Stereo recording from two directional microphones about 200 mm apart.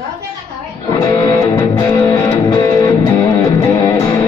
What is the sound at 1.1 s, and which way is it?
Music, 20° left (ahead or behind).